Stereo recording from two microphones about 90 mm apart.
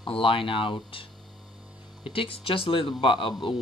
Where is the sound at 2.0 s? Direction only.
90° left.